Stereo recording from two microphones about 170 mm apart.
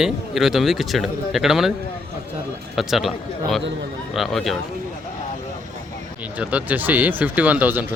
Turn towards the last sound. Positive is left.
turn(degrees=-10)  # may be behind; listen again after turning